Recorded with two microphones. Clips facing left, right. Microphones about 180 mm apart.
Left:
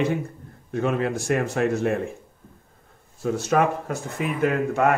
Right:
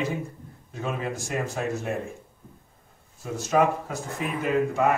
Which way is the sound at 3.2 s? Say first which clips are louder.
Left 3 dB; 65° left (ahead or behind).